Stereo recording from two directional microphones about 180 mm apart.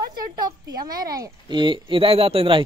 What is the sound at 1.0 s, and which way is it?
Speech, 20° right (ahead or behind).